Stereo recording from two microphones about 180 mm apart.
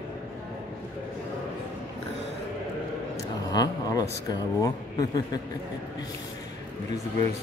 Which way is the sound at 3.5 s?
20° left (ahead or behind).